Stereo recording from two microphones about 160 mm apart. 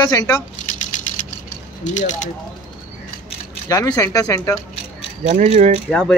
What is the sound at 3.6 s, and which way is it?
Speech, 20° left (ahead or behind).